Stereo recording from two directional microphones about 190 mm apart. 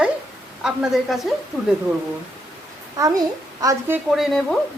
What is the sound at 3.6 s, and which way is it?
Speech, 15° right (ahead or behind).